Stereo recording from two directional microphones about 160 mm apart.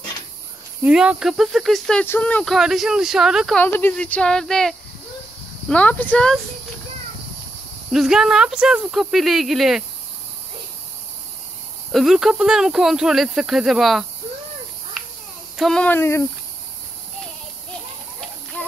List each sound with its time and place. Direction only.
0.8 s speech: 5° right (ahead or behind)
3.6 s speech: 10° left (ahead or behind)
7.9 s speech: centre (ahead or behind)
11.9 s speech: 5° right (ahead or behind)
15.5 s speech: centre (ahead or behind)